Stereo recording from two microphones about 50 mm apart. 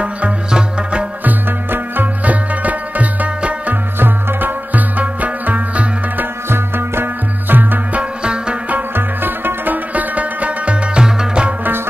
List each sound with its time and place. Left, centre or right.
0.5 s music: centre
1.2 s music: right
4.0 s music: right
6.5 s music: right
8.2 s music: centre
8.9 s music: right; by 11.5 s centre